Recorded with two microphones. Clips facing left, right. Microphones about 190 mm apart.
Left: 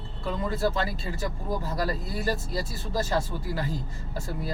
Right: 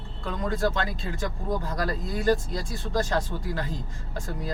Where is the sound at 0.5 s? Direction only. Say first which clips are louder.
Right 1 dB; 5° left (ahead or behind).